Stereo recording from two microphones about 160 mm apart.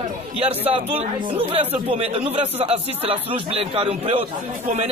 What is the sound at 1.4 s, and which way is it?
Speech, 35° right (ahead or behind).